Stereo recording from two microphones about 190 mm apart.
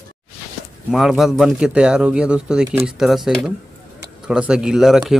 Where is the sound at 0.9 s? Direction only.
Centre (ahead or behind).